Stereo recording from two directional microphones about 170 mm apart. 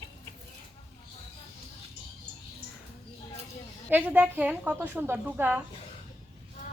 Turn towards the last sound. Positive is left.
turn(degrees=-10)  # may be behind; listen again after turning